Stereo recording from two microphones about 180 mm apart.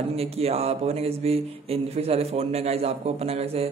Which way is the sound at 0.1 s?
35° right (ahead or behind).